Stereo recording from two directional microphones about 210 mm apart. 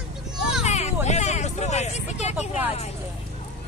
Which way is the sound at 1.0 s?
35° left (ahead or behind).